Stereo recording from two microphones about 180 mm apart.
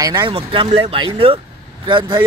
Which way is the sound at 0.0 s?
25° right (ahead or behind).